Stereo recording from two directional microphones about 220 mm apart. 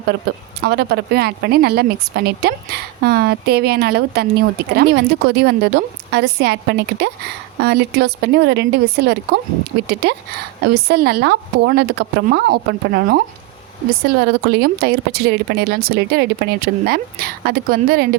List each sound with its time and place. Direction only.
0.3 s speech: 45° right (ahead or behind)
14.3 s speech: 45° right (ahead or behind)